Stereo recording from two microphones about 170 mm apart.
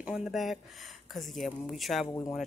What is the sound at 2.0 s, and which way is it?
Speech, 15° left (ahead or behind).